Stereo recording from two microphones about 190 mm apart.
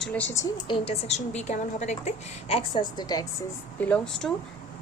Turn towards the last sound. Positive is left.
turn(degrees=5)  # may be behind; listen again after turning